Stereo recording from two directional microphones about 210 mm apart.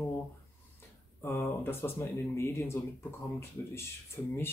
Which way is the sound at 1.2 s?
10° left (ahead or behind).